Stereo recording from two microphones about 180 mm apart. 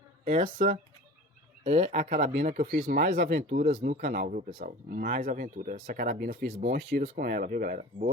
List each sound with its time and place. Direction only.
0.3 s speech: 50° right (ahead or behind)
1.6 s speech: 40° right (ahead or behind); by 3.2 s 60° right (ahead or behind)
3.2 s speech: 40° right (ahead or behind)
3.8 s speech: 55° right (ahead or behind)